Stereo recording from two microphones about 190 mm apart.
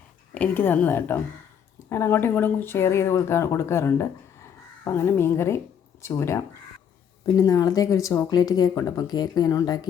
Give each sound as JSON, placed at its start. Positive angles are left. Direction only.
{"t": 0.3, "sound": "speech", "side_deg": 10}